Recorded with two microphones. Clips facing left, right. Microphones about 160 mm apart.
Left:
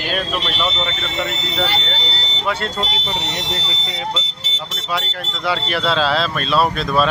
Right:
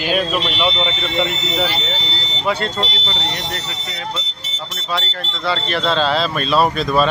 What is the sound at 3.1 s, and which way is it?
Smoke detector, 20° left (ahead or behind).